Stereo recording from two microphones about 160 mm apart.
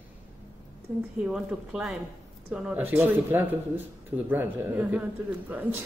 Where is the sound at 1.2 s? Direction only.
5° right (ahead or behind).